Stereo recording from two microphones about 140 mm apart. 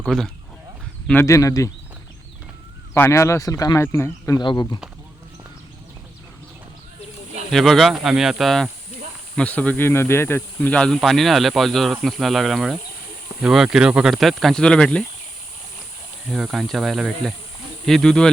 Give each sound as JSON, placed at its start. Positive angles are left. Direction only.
{"t": 0.0, "sound": "speech", "side_deg": 0}
{"t": 1.2, "sound": "speech", "side_deg": 20}
{"t": 2.9, "sound": "speech", "side_deg": 20}
{"t": 4.4, "sound": "speech", "side_deg": 30}
{"t": 7.5, "sound": "speech", "side_deg": 0}
{"t": 16.3, "sound": "speech", "side_deg": 0}